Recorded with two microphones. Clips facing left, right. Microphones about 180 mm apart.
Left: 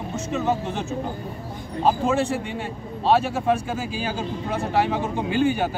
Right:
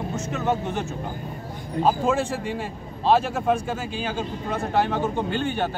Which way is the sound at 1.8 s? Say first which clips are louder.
Left 1 dB; centre (ahead or behind).